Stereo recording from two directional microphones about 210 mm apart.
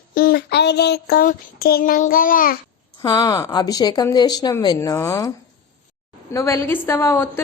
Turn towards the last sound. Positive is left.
turn(degrees=10)  # may be behind; listen again after turning